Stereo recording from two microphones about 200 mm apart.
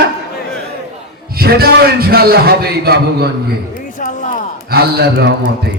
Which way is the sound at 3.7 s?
40° left (ahead or behind).